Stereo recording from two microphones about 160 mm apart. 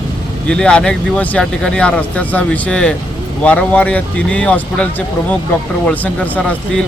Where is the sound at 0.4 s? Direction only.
5° left (ahead or behind).